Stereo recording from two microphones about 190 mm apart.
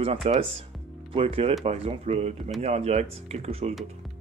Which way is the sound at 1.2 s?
30° right (ahead or behind).